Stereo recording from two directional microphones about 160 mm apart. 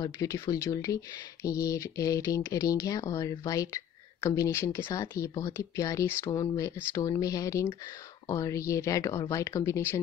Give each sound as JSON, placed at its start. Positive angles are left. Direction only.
{"t": 0.0, "sound": "speech", "side_deg": 20}